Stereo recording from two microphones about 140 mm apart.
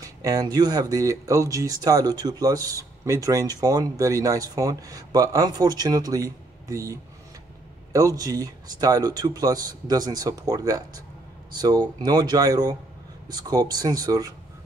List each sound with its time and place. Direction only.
0.0 s speech: 25° right (ahead or behind)
8.2 s speech: 25° right (ahead or behind)